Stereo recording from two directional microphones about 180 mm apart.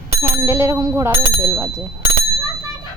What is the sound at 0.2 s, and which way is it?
Speech, 15° right (ahead or behind).